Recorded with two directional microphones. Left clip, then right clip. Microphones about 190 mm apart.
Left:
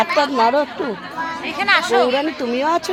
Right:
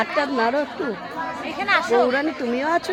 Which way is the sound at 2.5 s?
20° left (ahead or behind).